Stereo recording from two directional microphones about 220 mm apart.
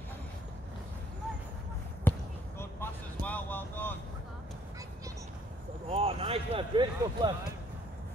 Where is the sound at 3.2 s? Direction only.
10° left (ahead or behind).